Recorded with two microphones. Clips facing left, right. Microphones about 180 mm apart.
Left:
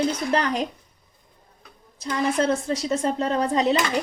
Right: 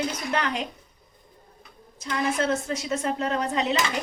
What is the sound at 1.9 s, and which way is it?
A woman's voice, 35° left (ahead or behind).